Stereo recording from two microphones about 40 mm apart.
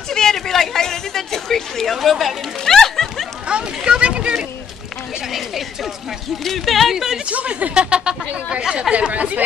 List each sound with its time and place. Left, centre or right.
0.1 s a sound: centre
2.0 s speech: centre
2.6 s music: centre
3.4 s speech: right
5.3 s speech: centre
7.2 s speech: right
9.1 s speech: right